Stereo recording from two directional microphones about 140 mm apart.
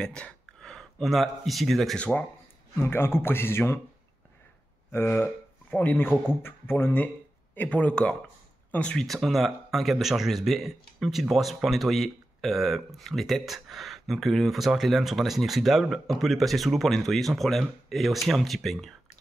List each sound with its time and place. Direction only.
0.0 s speech: 5° left (ahead or behind)
2.8 s speech: 15° left (ahead or behind)
4.9 s speech: 15° left (ahead or behind); by 18.9 s centre (ahead or behind)